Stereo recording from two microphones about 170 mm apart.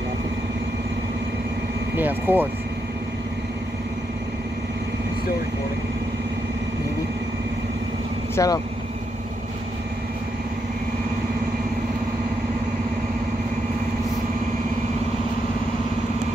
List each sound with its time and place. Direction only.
2.0 s speech: 10° right (ahead or behind)
8.4 s speech: 20° left (ahead or behind)